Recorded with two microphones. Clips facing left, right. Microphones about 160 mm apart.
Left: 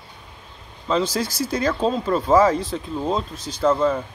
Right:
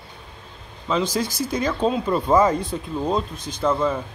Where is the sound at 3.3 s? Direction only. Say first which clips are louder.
Even; 55° right (ahead or behind).